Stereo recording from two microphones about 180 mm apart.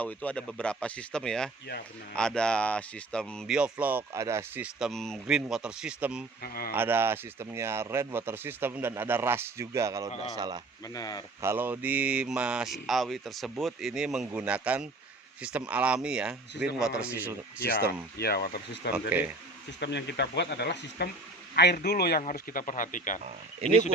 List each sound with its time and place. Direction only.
0.0 s speech: 10° left (ahead or behind)
6.4 s a man's voice: 55° left (ahead or behind)
6.7 s speech: 10° right (ahead or behind)
10.8 s speech: 20° left (ahead or behind)
11.3 s speech: 15° right (ahead or behind)
18.2 s a man's voice: 60° left (ahead or behind)
19.8 s a man's voice: 70° left (ahead or behind)
22.2 s speech: 45° left (ahead or behind)
23.2 s speech: 35° right (ahead or behind)